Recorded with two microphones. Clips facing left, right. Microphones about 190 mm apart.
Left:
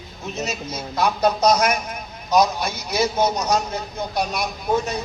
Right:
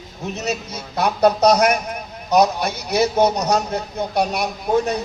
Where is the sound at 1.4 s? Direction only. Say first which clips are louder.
Right 2 dB; 40° right (ahead or behind).